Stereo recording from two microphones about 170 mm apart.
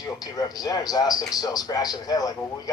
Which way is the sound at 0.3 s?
20° left (ahead or behind).